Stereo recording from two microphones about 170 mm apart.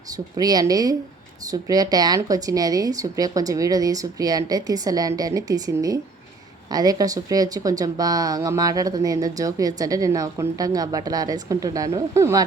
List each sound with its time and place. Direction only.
0.3 s speech: 20° right (ahead or behind)